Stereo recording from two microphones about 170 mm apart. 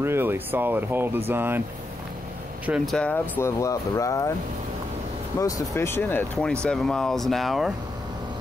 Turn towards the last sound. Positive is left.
turn(degrees=0)  # may be behind; listen again after turning